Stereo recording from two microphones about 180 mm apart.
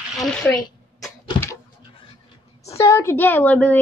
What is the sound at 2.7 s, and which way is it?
A woman's voice, 15° left (ahead or behind).